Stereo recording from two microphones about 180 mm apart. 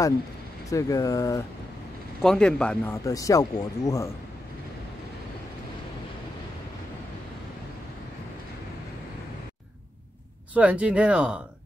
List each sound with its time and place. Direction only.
0.7 s speech: 20° left (ahead or behind)
2.2 s speech: 5° left (ahead or behind)
10.5 s speech: 10° right (ahead or behind)